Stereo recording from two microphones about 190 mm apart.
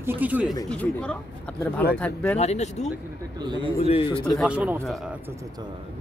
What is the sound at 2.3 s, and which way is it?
Speech, 35° left (ahead or behind).